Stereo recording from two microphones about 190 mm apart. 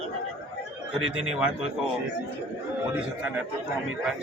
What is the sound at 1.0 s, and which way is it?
Speech, 90° right.